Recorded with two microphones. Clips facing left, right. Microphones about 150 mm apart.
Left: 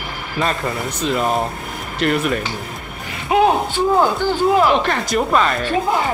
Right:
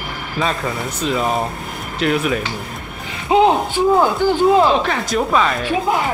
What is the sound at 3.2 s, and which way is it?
Speech, 20° right (ahead or behind).